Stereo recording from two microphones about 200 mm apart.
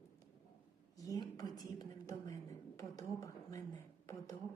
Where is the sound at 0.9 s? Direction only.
15° left (ahead or behind).